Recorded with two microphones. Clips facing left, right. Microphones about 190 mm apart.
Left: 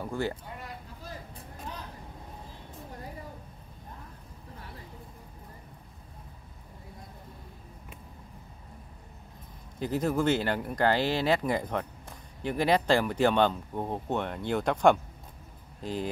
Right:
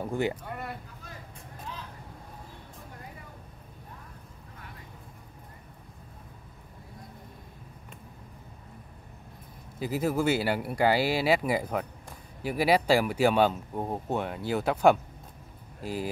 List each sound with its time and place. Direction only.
0.0 s speech: 15° right (ahead or behind)
0.5 s a sound: 60° right (ahead or behind)
9.8 s speech: 5° right (ahead or behind)